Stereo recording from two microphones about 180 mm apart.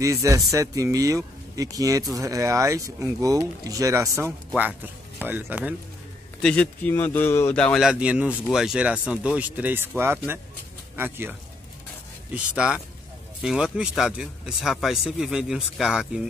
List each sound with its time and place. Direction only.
0.0 s speech: 20° right (ahead or behind)
6.4 s speech: 10° left (ahead or behind)